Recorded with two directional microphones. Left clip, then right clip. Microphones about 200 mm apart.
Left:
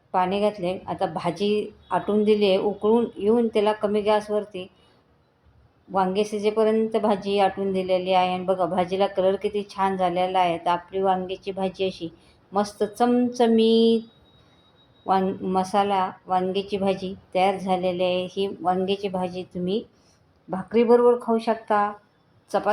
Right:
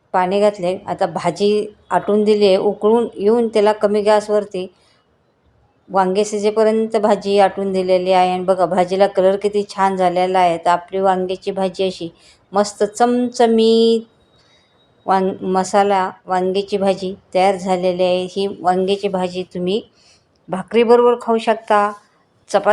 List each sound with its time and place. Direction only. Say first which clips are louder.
0.1 s a woman's voice: right 7 dB; 25° right (ahead or behind)
5.9 s a woman's voice: right 7 dB; 25° right (ahead or behind)
15.0 s a woman's voice: right 6 dB; 25° right (ahead or behind)